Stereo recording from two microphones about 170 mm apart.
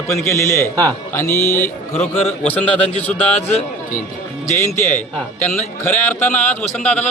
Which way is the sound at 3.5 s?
40° left (ahead or behind).